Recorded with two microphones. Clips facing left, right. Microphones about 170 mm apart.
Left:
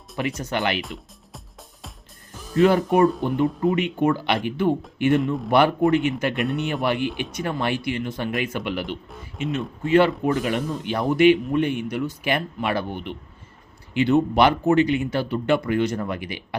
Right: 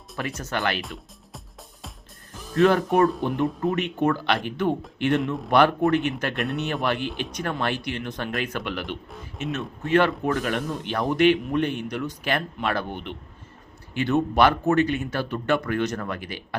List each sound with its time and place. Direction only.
0.2 s speech: 15° left (ahead or behind)
0.8 s speech: centre (ahead or behind)
5.5 s speech: 10° left (ahead or behind)
6.8 s speech: 15° left (ahead or behind)
9.0 s music: centre (ahead or behind)
9.6 s speech: 10° left (ahead or behind)